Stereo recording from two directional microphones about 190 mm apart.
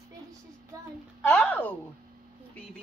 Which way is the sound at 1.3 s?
5° left (ahead or behind).